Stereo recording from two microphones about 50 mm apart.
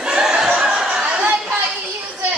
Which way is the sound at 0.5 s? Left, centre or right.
Centre.